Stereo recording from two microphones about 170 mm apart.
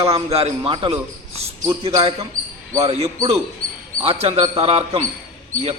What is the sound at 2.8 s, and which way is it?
A man's voice, 40° right (ahead or behind).